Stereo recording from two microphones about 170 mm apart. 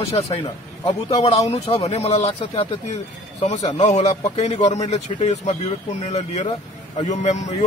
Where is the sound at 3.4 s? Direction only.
40° left (ahead or behind).